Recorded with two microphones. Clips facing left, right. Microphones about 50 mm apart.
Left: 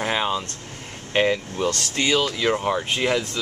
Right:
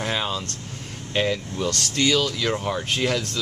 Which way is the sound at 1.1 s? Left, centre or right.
Left.